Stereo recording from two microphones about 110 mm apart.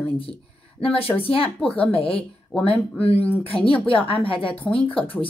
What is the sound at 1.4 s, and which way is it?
Speech, 10° left (ahead or behind).